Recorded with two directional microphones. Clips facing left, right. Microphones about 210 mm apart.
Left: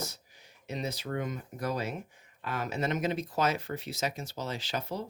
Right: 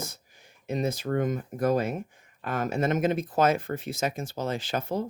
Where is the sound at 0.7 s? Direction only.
50° right (ahead or behind).